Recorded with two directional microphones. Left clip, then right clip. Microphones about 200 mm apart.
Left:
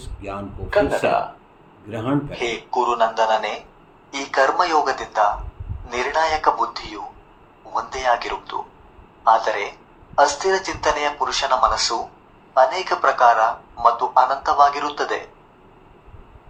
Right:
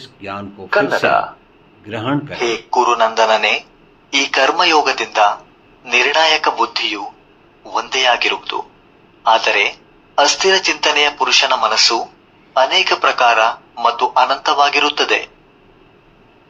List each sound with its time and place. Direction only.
0.0 s a man's voice: centre (ahead or behind); by 15.3 s 25° right (ahead or behind)